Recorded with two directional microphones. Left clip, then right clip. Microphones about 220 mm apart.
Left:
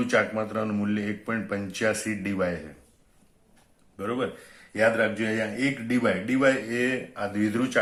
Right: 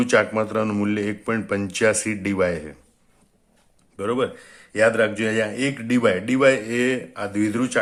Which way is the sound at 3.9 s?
40° right (ahead or behind).